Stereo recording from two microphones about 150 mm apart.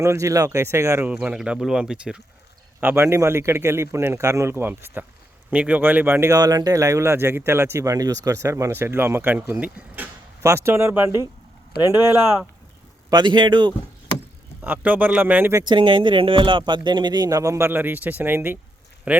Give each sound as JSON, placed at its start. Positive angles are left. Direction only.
{"t": 0.0, "sound": "speech", "side_deg": -20}
{"t": 1.1, "sound": "speech", "side_deg": -5}
{"t": 2.8, "sound": "speech", "side_deg": -15}
{"t": 13.1, "sound": "speech", "side_deg": -30}
{"t": 14.6, "sound": "speech", "side_deg": -10}
{"t": 15.6, "sound": "speech", "side_deg": -30}